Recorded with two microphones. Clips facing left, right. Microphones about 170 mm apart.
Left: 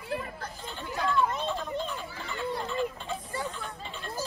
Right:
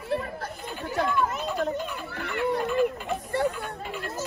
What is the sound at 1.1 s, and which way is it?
Chatter, 10° right (ahead or behind).